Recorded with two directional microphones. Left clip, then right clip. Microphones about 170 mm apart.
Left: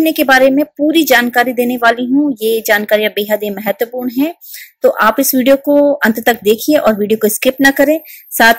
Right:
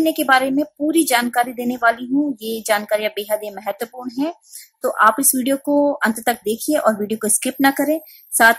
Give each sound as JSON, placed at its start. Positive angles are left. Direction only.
{"t": 0.0, "sound": "a woman's voice", "side_deg": 20}